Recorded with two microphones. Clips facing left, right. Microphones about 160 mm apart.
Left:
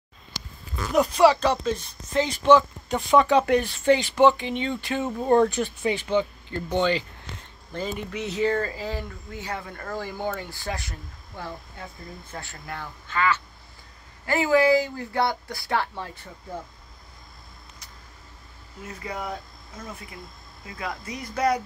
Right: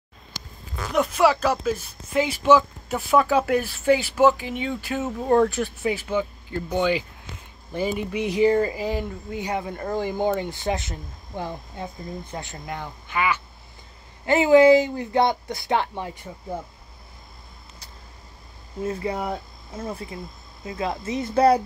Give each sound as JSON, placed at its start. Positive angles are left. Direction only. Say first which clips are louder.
{"t": 0.9, "sound": "speech", "louder": "left 2 dB", "side_deg": 0}
{"t": 18.8, "sound": "speech", "louder": "right 8 dB", "side_deg": -30}